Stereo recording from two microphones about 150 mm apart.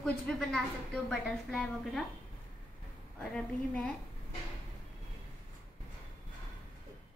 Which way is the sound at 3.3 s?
5° left (ahead or behind).